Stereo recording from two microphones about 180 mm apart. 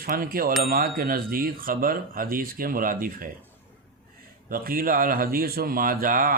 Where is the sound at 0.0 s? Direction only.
55° right (ahead or behind).